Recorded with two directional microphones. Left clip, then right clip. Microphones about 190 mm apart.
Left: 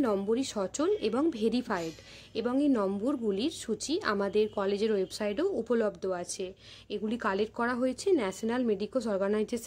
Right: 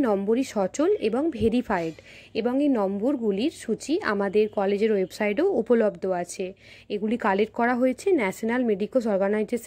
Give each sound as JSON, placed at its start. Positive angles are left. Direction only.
{"t": 0.0, "sound": "a woman's voice", "side_deg": -15}